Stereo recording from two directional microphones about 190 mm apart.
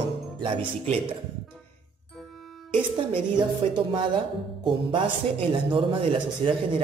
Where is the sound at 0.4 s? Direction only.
30° right (ahead or behind).